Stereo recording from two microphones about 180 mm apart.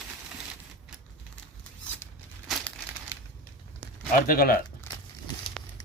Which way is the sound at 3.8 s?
90° right.